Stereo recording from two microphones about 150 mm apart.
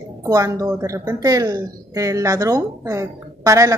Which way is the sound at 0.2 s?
20° right (ahead or behind).